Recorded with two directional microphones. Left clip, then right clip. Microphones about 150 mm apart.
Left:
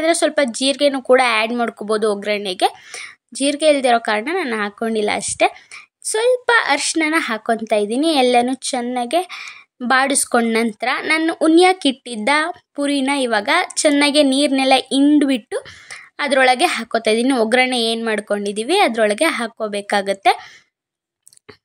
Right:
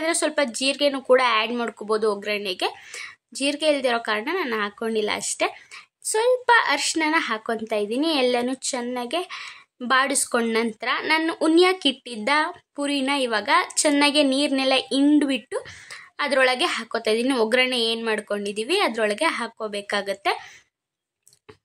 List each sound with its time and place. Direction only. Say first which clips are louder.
0.0 s a woman's voice: left 7 dB; 25° left (ahead or behind)